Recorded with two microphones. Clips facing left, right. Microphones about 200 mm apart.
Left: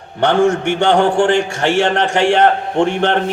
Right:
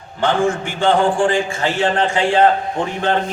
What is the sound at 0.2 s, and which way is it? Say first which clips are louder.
A man's voice: left 4 dB; 70° left (ahead or behind).